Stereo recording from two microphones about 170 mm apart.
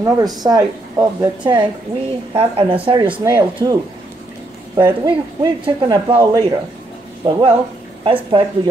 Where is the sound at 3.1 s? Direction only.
15° right (ahead or behind).